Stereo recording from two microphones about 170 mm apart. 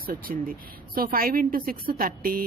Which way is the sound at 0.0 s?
60° right (ahead or behind).